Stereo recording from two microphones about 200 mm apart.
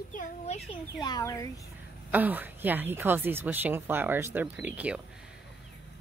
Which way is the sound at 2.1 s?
10° right (ahead or behind).